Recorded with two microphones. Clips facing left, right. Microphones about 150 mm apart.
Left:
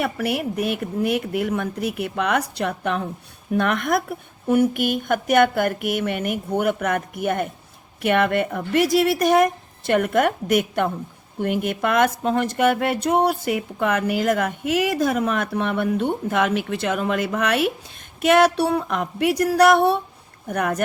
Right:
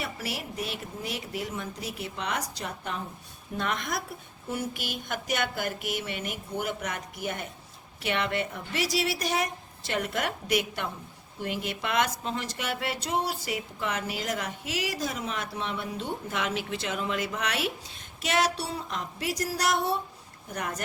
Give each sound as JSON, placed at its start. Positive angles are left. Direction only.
{"t": 0.0, "sound": "speech", "side_deg": 55}